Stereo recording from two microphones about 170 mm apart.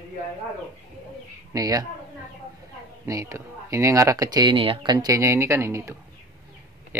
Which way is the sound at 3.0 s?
15° right (ahead or behind).